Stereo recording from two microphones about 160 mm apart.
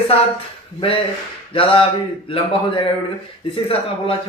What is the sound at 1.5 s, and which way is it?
Speech, 35° left (ahead or behind).